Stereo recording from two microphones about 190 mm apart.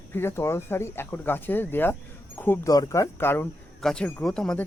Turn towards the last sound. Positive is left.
turn(degrees=5)  # may be behind; listen again after turning